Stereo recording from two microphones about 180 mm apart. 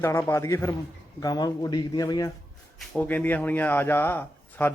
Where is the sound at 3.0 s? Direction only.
10° left (ahead or behind).